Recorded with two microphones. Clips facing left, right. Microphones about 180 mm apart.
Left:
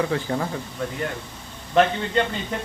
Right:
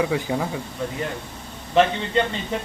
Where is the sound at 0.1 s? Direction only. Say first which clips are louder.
Right 1 dB; 10° right (ahead or behind).